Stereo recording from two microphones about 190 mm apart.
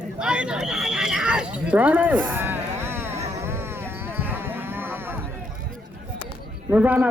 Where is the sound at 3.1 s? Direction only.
35° right (ahead or behind).